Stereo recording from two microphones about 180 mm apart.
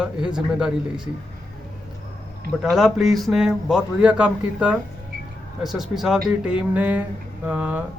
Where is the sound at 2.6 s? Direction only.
Centre (ahead or behind).